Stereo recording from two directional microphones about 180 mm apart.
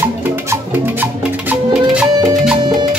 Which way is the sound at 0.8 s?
10° right (ahead or behind).